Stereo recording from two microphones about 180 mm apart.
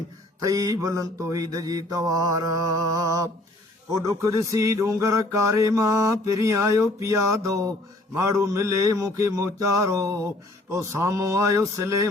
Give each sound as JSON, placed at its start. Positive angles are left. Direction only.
{"t": 0.4, "sound": "mantra", "side_deg": -20}